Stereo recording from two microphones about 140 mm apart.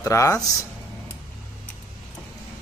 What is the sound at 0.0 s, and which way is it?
Speech, 25° left (ahead or behind).